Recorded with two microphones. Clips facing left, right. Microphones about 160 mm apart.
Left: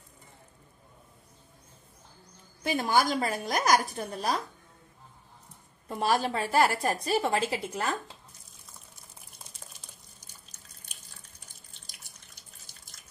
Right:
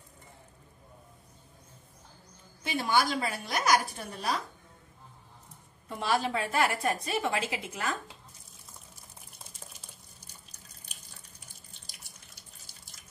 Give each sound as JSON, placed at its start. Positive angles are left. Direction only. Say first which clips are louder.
{"t": 2.6, "sound": "a woman's voice", "louder": "left 2 dB", "side_deg": 45}
{"t": 5.9, "sound": "a woman's voice", "louder": "left 2 dB", "side_deg": 40}